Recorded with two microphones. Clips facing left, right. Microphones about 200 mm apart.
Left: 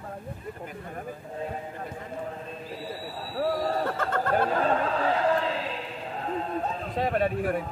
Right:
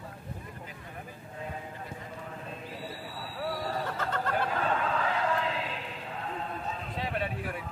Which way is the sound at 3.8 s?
50° left (ahead or behind).